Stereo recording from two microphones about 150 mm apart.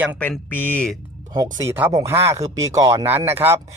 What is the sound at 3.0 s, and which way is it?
Speech, 15° right (ahead or behind).